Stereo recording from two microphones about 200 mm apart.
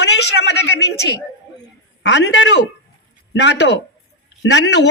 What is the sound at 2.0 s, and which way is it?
Speech, 60° left (ahead or behind).